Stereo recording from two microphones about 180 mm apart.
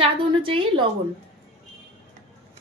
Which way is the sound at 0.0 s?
30° right (ahead or behind).